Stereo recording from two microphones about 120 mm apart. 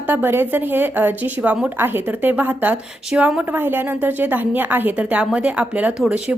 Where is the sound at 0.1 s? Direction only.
15° right (ahead or behind).